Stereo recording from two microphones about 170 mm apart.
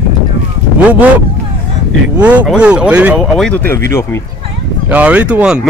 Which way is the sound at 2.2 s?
10° right (ahead or behind).